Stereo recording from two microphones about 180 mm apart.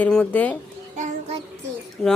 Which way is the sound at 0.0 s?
5° left (ahead or behind).